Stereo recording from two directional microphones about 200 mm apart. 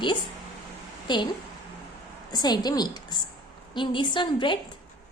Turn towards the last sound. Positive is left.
turn(degrees=25)  # may be behind; listen again after turning